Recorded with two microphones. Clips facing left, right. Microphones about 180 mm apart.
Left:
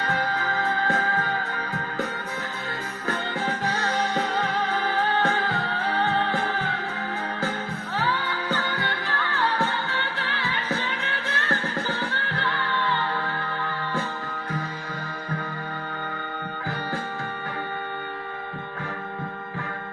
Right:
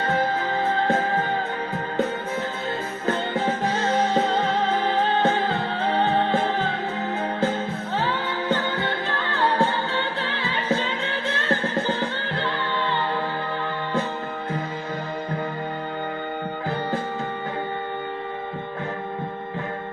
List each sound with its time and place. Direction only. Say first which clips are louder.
0.0 s music: right 4 dB; 25° right (ahead or behind)
3.1 s music: right 5 dB; 25° right (ahead or behind)
7.9 s music: right 1 dB; 25° right (ahead or behind)